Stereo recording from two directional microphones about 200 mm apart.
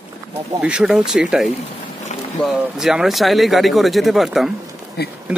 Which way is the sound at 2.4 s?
Centre (ahead or behind).